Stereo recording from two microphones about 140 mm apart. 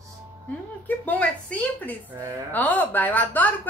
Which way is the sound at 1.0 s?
10° left (ahead or behind).